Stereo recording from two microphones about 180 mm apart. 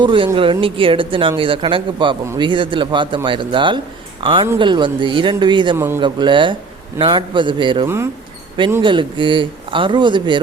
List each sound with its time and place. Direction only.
0.0 s speech: 30° right (ahead or behind)
5.7 s a man's voice: 15° right (ahead or behind)
6.0 s speech: 25° right (ahead or behind)
7.9 s a man's voice: 15° right (ahead or behind)
8.8 s speech: 25° right (ahead or behind)